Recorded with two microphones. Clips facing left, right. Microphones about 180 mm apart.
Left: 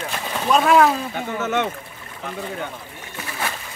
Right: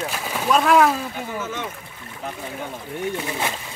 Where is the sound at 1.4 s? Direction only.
70° left (ahead or behind).